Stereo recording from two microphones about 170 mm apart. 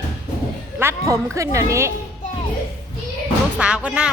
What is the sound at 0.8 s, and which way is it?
A woman's voice, 15° right (ahead or behind).